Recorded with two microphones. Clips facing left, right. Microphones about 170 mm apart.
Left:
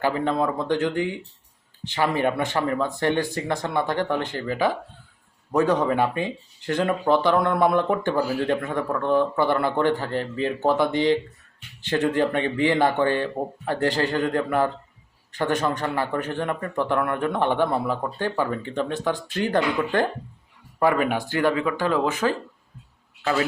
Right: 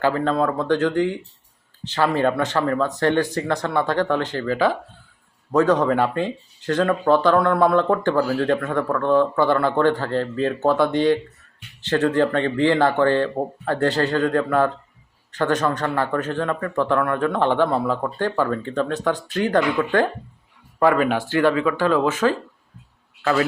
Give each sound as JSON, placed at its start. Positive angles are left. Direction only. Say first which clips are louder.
{"t": 0.0, "sound": "speech", "louder": "right 3 dB", "side_deg": 15}